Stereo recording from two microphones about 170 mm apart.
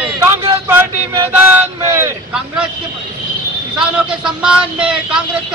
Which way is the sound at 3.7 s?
5° right (ahead or behind).